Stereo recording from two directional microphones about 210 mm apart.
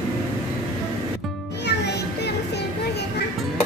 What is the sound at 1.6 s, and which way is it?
Music, 50° left (ahead or behind).